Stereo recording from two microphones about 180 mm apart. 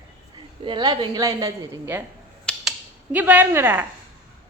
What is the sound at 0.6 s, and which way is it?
A woman's voice, 25° right (ahead or behind).